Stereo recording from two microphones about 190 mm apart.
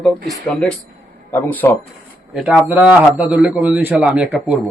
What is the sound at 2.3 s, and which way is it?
A man's voice, 5° right (ahead or behind).